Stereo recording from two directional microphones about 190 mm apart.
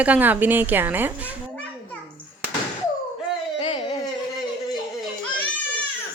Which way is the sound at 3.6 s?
30° left (ahead or behind).